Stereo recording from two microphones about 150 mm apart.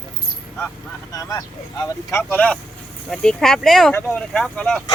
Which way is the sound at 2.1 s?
10° left (ahead or behind).